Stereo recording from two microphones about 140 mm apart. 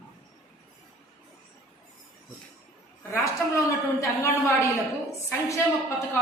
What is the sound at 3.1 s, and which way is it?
A woman's voice, 20° left (ahead or behind).